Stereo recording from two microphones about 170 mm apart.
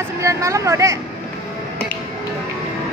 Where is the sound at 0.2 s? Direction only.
20° right (ahead or behind).